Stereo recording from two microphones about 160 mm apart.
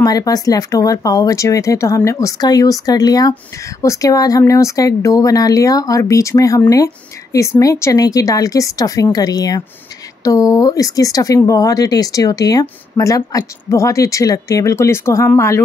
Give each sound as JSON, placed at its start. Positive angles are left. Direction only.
{"t": 0.0, "sound": "speech", "side_deg": 20}